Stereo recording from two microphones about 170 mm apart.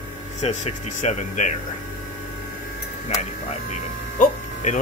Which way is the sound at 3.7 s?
45° left (ahead or behind).